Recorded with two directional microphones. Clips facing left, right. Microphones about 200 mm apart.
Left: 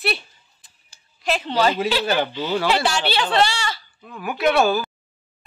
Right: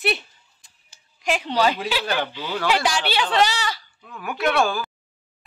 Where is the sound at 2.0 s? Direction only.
5° left (ahead or behind).